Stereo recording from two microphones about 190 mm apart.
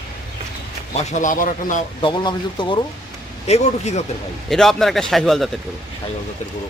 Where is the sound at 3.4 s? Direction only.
35° left (ahead or behind).